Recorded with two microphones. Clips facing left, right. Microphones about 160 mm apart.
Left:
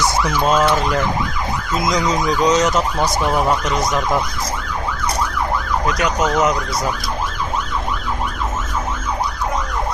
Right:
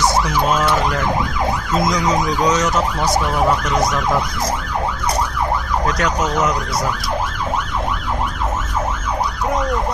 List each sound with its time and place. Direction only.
2.4 s emergency vehicle: 20° left (ahead or behind)
5.9 s ambulance: 15° left (ahead or behind)